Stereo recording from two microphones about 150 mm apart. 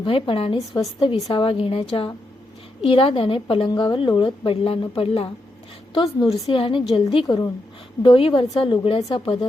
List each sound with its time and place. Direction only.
0.0 s a woman's voice: 35° left (ahead or behind)